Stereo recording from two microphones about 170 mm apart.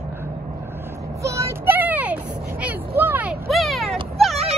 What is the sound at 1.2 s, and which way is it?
Child singing, 15° right (ahead or behind).